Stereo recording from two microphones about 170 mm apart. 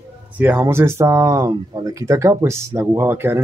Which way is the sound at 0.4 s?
15° right (ahead or behind).